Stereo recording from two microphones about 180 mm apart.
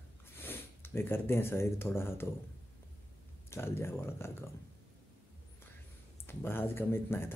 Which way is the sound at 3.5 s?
15° left (ahead or behind).